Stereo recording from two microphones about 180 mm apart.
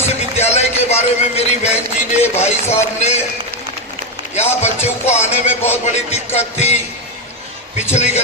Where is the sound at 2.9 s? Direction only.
40° left (ahead or behind).